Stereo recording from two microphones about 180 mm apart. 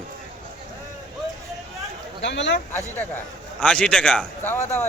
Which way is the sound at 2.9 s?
10° left (ahead or behind).